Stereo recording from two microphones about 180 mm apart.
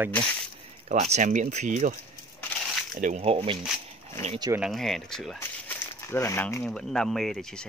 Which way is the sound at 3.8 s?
35° right (ahead or behind).